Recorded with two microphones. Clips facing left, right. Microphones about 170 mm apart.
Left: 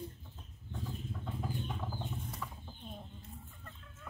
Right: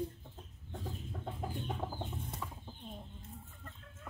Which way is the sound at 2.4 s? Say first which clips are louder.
Even; 20° right (ahead or behind).